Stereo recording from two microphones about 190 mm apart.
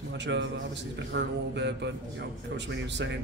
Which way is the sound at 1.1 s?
65° right (ahead or behind).